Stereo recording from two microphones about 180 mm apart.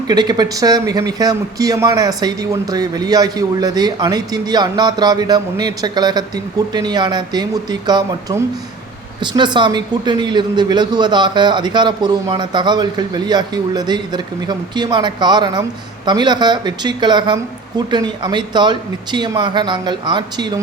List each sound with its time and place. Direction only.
0.1 s a man's voice: 25° right (ahead or behind)